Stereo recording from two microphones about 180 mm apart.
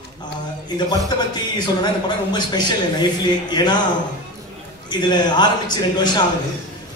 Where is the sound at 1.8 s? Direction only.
25° left (ahead or behind).